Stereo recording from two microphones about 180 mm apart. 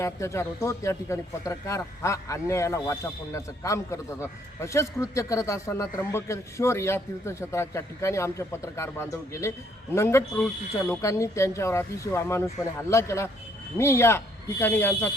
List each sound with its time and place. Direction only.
0.0 s a man's voice: 15° left (ahead or behind)